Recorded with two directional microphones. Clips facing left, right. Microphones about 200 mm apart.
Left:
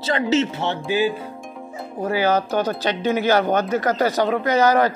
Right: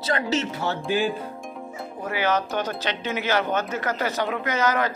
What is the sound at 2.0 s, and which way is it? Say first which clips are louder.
Speech: left 5 dB; 35° left (ahead or behind).